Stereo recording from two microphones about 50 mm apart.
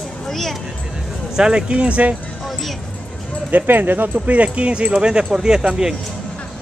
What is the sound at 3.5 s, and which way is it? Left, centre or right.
Speech, right.